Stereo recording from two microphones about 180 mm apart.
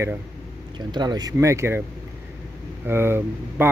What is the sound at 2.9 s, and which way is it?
Speech, 15° right (ahead or behind).